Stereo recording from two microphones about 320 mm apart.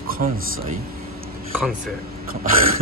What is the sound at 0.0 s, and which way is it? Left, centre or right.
Speech, right.